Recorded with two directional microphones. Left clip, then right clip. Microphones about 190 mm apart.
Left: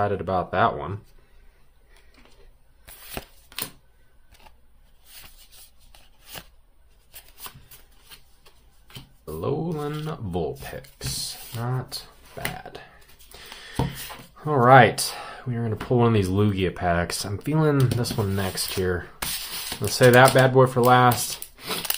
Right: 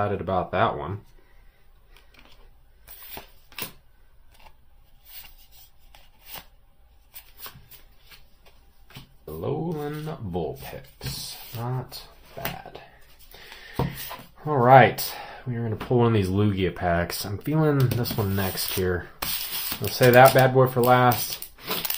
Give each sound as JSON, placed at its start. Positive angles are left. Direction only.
{"t": 0.0, "sound": "speech", "side_deg": 5}
{"t": 4.3, "sound": "a sound", "side_deg": 5}
{"t": 9.4, "sound": "speech", "side_deg": 25}
{"t": 20.0, "sound": "speech", "side_deg": 15}